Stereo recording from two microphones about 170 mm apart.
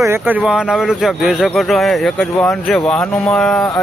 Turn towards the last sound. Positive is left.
turn(degrees=5)  # may be behind; listen again after turning